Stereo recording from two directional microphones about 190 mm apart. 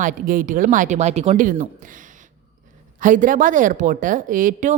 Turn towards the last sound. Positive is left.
turn(degrees=-45)  # may be behind; listen again after turning